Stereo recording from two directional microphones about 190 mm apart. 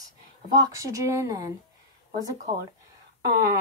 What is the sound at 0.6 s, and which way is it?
Speech, 15° right (ahead or behind).